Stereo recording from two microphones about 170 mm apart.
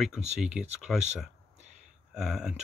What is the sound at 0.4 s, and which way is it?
Speech, 5° right (ahead or behind).